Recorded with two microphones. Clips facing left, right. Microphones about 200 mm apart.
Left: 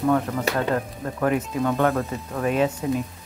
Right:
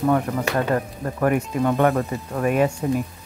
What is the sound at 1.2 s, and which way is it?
Speech, 5° right (ahead or behind).